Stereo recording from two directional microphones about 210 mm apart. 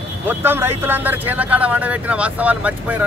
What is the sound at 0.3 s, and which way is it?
Speech, 10° right (ahead or behind).